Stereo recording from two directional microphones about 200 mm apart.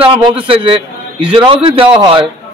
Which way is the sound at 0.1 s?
25° right (ahead or behind).